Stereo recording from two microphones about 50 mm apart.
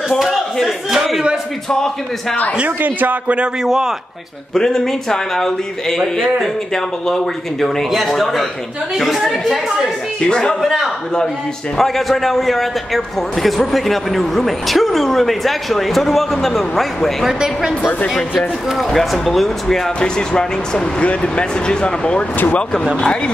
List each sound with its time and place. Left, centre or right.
0.2 s a man's voice: centre
2.8 s a man's voice: right
3.6 s speech: centre
4.6 s a man's voice: centre
10.2 s speech: centre
10.5 s a man's voice: centre
17.3 s speech: centre
18.7 s a man's voice: centre
20.0 s speech: centre